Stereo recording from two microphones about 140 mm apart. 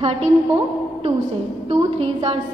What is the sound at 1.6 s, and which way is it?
Speech, 45° right (ahead or behind).